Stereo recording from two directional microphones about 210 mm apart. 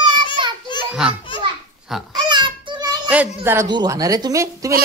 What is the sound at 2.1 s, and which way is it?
Child singing, 20° right (ahead or behind).